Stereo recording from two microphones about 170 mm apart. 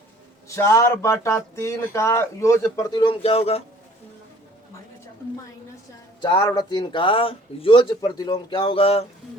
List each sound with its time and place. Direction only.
0.4 s speech: 15° left (ahead or behind); by 3.6 s 35° left (ahead or behind)
6.2 s speech: 25° left (ahead or behind)